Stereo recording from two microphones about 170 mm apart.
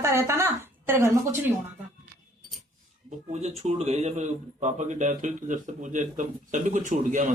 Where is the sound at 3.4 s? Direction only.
35° right (ahead or behind).